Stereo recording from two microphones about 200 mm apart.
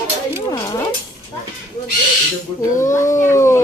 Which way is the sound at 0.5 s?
20° left (ahead or behind).